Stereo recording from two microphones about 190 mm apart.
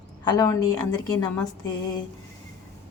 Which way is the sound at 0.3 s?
20° left (ahead or behind).